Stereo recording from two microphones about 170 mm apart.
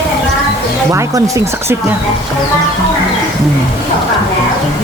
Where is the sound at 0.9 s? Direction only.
20° right (ahead or behind).